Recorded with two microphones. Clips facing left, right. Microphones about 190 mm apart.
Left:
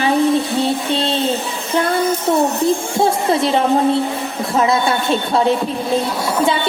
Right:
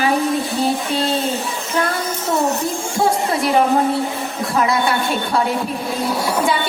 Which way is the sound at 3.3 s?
25° left (ahead or behind).